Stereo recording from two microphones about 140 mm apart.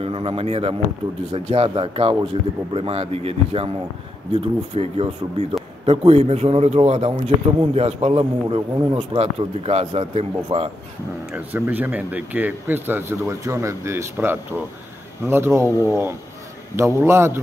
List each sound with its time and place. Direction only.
0.0 s speech: 40° right (ahead or behind)
11.3 s a man's voice: 10° right (ahead or behind)